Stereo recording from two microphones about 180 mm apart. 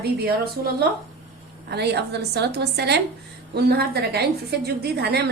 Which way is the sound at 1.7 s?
65° right (ahead or behind).